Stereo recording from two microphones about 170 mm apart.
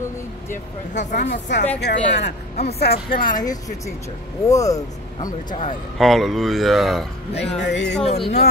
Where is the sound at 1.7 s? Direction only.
90° left.